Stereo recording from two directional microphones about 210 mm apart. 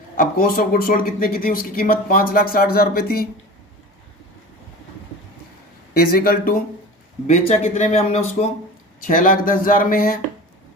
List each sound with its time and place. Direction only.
0.2 s speech: 40° left (ahead or behind)
5.9 s speech: 45° left (ahead or behind)
7.3 s speech: 30° left (ahead or behind)